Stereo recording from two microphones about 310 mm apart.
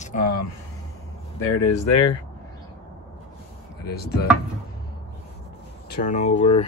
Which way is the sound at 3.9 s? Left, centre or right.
Left.